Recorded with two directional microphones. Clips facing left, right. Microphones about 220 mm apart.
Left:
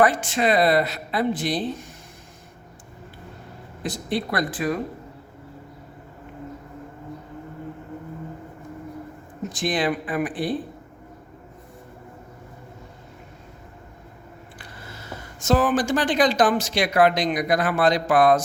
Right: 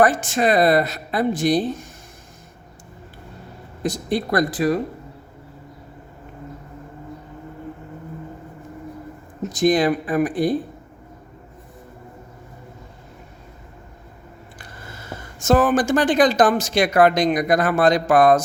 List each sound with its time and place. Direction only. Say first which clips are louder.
0.0 s speech: right 2 dB; 45° right (ahead or behind)
3.8 s speech: right 4 dB; 45° right (ahead or behind)
9.5 s speech: right 7 dB; 45° right (ahead or behind)
15.4 s speech: right 3 dB; 50° right (ahead or behind)